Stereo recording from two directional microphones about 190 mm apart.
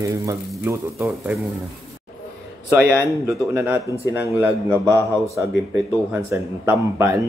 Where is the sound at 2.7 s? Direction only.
15° right (ahead or behind).